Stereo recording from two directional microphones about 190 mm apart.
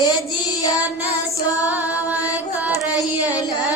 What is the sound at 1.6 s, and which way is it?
Music, 10° right (ahead or behind).